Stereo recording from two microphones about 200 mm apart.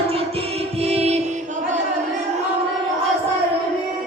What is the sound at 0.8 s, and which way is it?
Music, 30° right (ahead or behind).